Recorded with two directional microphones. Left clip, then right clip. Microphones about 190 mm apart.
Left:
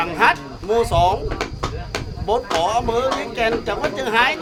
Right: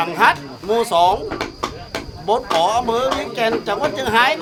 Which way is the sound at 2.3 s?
20° right (ahead or behind).